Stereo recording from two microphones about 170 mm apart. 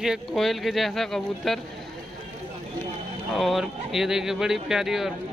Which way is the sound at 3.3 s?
Centre (ahead or behind).